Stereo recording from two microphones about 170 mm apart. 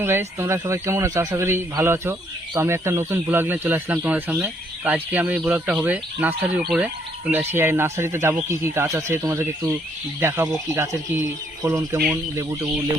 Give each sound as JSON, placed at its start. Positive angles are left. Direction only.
{"t": 0.0, "sound": "speech", "side_deg": -15}